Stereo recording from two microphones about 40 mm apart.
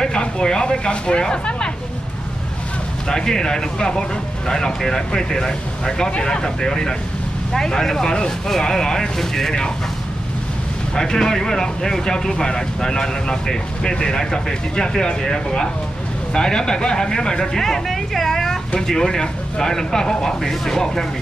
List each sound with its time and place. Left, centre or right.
0.0 s speech: left
3.1 s speech: centre
11.0 s speech: centre
17.8 s vehicle: centre
18.8 s speech: centre